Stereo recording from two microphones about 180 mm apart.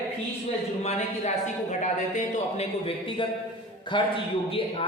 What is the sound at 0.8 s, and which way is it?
A man's voice, 35° left (ahead or behind).